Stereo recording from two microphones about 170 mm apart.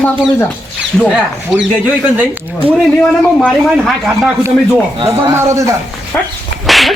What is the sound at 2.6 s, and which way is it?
Speech, 35° right (ahead or behind).